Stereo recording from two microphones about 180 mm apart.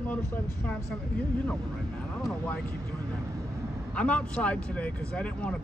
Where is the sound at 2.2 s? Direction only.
5° left (ahead or behind).